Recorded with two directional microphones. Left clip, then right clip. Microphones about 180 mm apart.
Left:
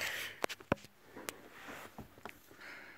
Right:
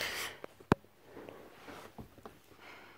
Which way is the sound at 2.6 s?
Centre (ahead or behind).